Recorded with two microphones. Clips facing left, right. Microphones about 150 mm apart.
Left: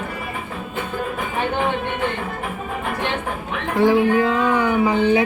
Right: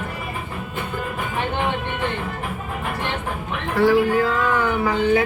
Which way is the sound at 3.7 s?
20° left (ahead or behind).